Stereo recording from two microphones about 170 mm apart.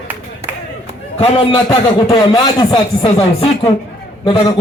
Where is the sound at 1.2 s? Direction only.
25° left (ahead or behind).